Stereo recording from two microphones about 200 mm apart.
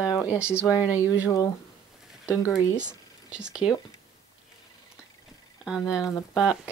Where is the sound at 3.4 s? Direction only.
5° right (ahead or behind).